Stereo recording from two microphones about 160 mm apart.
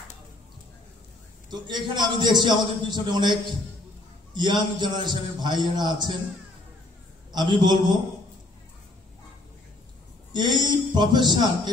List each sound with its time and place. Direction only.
1.5 s a man's voice: 30° right (ahead or behind)
7.3 s a man's voice: 25° right (ahead or behind)
10.3 s a man's voice: 30° right (ahead or behind)